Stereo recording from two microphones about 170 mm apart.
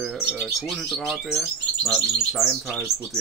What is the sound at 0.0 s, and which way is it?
Speech, centre (ahead or behind).